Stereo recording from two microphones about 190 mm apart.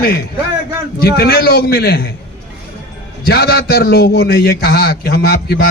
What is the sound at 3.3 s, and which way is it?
A man's voice, 55° left (ahead or behind).